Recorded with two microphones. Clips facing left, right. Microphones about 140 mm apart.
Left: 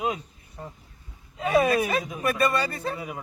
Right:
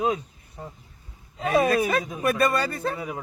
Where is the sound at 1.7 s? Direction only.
45° right (ahead or behind).